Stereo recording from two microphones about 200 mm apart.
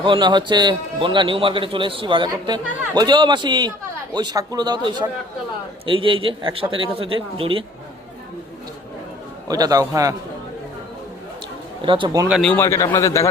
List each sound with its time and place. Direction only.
0.0 s a man's voice: 25° right (ahead or behind)
9.5 s a man's voice: 20° right (ahead or behind)
11.8 s a man's voice: 25° right (ahead or behind)
12.3 s a man's voice: 5° left (ahead or behind)